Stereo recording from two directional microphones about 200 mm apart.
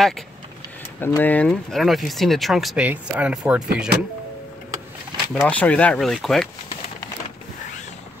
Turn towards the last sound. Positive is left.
turn(degrees=0)  # may be behind; listen again after turning